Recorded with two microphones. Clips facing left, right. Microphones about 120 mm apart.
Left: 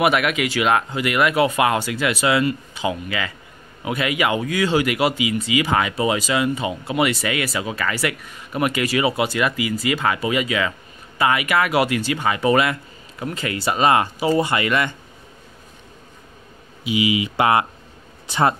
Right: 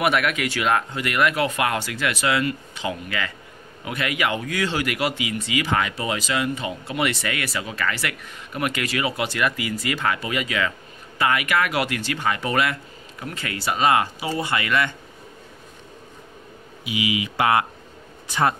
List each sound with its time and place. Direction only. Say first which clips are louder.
0.0 s speech: left 3 dB; 15° left (ahead or behind); by 14.5 s 35° left (ahead or behind)
14.5 s speech: left 2 dB; 25° left (ahead or behind)
16.8 s speech: left 5 dB; 25° left (ahead or behind)